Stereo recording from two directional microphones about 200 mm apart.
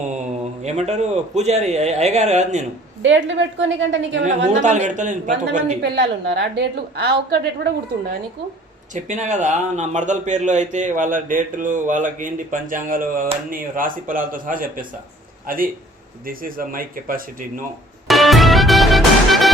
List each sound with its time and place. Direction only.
0.6 s speech: 35° right (ahead or behind)
3.0 s a woman's voice: 65° right (ahead or behind)
4.6 s speech: 35° right (ahead or behind)
5.8 s a woman's voice: 60° right (ahead or behind)
9.0 s speech: 35° right (ahead or behind)
18.1 s music: centre (ahead or behind)